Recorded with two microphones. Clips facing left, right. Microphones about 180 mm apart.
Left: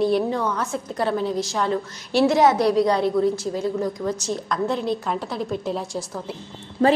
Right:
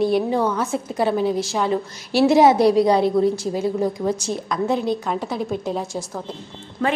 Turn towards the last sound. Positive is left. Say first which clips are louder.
# left 4 dB
turn(degrees=30)  # may be behind; listen again after turning